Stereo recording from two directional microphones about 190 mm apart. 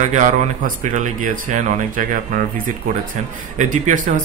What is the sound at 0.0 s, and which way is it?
A man's voice, 40° right (ahead or behind).